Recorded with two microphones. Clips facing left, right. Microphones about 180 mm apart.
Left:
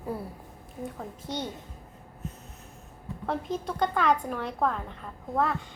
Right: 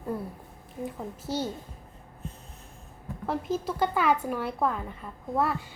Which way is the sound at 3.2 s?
5° right (ahead or behind).